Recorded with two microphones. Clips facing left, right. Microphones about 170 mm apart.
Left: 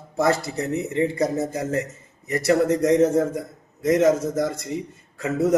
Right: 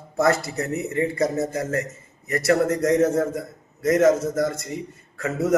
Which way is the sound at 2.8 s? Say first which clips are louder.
Left 1 dB; 15° left (ahead or behind).